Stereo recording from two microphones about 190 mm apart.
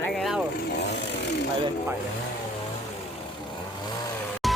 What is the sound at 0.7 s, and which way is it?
Speech, 65° left (ahead or behind).